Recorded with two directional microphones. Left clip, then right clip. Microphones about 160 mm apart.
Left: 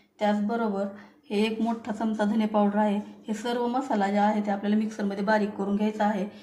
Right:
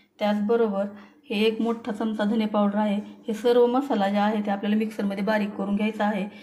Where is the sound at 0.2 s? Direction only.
25° right (ahead or behind).